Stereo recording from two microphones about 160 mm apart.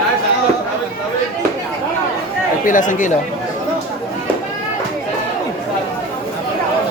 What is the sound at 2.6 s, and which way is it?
Speech, 55° left (ahead or behind).